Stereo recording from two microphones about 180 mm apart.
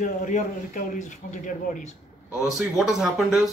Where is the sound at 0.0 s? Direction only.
45° left (ahead or behind).